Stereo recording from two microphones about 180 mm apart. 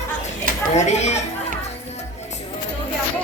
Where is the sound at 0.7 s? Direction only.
40° left (ahead or behind).